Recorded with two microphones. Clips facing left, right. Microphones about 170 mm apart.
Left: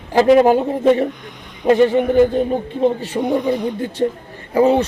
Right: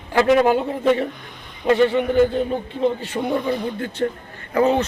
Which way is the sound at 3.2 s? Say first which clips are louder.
Left 4 dB; 15° left (ahead or behind).